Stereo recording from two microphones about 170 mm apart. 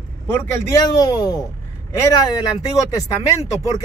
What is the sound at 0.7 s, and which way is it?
Speech, 20° left (ahead or behind).